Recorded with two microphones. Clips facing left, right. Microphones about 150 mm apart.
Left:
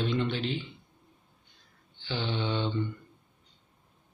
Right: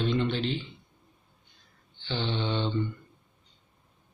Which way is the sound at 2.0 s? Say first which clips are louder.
Right 1 dB; 5° left (ahead or behind).